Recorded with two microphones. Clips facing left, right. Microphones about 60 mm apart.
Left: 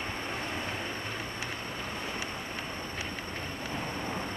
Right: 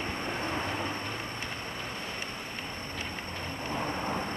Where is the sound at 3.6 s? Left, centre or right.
Right.